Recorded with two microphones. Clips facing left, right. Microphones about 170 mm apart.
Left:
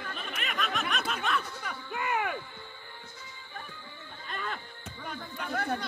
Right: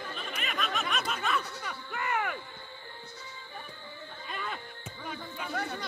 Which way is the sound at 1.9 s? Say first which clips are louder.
Left 1 dB; 15° left (ahead or behind).